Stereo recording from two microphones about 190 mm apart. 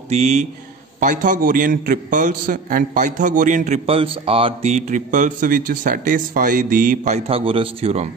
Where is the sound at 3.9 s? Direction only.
30° right (ahead or behind).